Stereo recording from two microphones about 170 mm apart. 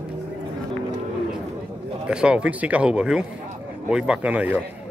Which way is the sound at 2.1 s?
5° right (ahead or behind).